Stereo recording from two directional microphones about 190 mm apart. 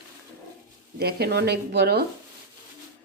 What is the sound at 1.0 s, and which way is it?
A woman's voice, 55° right (ahead or behind).